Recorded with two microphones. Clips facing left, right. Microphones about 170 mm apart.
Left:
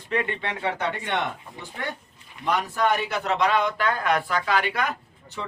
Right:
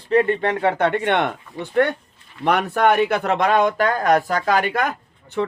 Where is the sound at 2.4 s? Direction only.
65° right (ahead or behind); by 4.9 s 45° right (ahead or behind).